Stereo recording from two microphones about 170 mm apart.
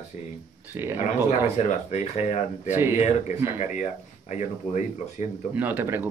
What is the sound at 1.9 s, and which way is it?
Speech, 40° left (ahead or behind).